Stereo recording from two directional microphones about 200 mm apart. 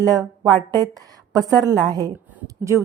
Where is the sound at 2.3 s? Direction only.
15° right (ahead or behind).